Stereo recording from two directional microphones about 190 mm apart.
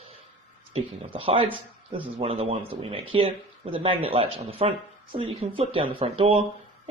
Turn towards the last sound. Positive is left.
turn(degrees=-30)  # may be behind; listen again after turning